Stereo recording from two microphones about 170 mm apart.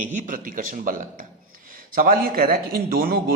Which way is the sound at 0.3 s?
55° right (ahead or behind).